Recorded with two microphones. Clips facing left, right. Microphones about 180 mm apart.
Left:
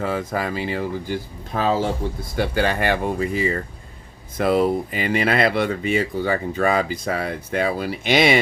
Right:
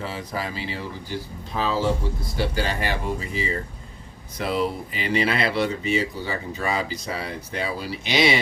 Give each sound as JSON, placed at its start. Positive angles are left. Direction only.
{"t": 0.0, "sound": "speech", "side_deg": 50}